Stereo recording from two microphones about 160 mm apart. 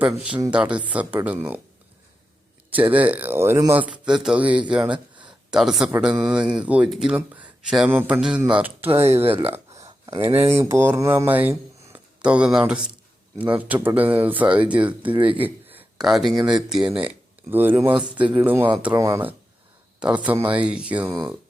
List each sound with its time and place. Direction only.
0.0 s speech: 10° right (ahead or behind)
2.9 s speech: 10° right (ahead or behind)
8.9 s speech: 40° right (ahead or behind)
9.5 s a sound: 20° right (ahead or behind)
10.5 s speech: 15° right (ahead or behind)
15.1 s speech: 30° right (ahead or behind)
15.4 s a sound: 10° right (ahead or behind)
16.0 s speech: centre (ahead or behind); by 19.3 s 15° right (ahead or behind)
20.0 s speech: 5° right (ahead or behind)